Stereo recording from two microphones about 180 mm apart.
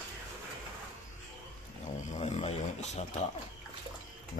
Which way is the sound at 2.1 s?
40° left (ahead or behind).